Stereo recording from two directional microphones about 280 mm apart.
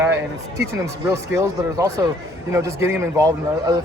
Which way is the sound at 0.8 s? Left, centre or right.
Centre.